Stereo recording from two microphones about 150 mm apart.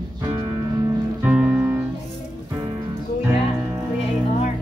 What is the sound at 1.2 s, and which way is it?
Music, 10° right (ahead or behind).